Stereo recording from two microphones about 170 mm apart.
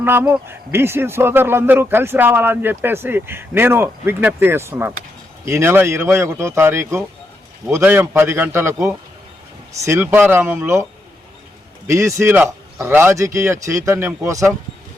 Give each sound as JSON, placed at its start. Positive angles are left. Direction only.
{"t": 0.0, "sound": "speech", "side_deg": -10}
{"t": 11.9, "sound": "speech", "side_deg": -15}